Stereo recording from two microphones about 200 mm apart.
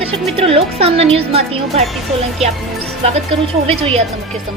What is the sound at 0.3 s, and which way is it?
A woman's voice, 30° right (ahead or behind).